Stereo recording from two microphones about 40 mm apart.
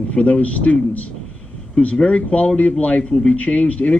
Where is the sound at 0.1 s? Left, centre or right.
Left.